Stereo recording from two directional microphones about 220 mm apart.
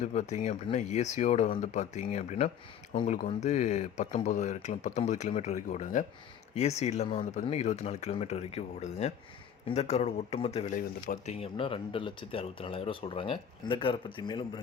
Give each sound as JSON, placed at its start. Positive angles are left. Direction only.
{"t": 0.0, "sound": "speech", "side_deg": 30}